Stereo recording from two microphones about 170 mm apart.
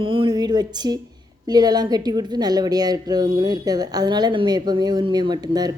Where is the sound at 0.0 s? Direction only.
30° right (ahead or behind).